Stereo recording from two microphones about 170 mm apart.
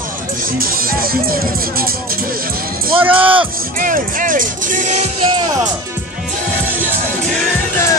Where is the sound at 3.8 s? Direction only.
55° right (ahead or behind); by 5.5 s 30° right (ahead or behind).